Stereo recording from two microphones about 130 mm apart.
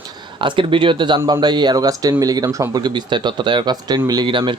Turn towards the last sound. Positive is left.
turn(degrees=-40)  # may be behind; listen again after turning